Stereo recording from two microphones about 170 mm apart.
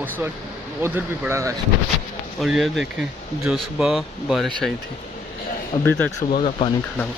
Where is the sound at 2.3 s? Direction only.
Centre (ahead or behind).